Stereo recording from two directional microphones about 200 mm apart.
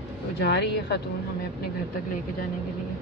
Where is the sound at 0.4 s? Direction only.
55° left (ahead or behind).